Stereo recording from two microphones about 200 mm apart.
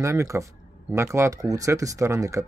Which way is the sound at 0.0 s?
15° right (ahead or behind).